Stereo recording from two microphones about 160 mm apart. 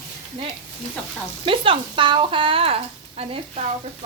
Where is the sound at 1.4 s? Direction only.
35° right (ahead or behind).